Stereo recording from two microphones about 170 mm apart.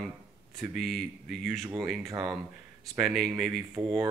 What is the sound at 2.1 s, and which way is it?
Speech, 20° right (ahead or behind).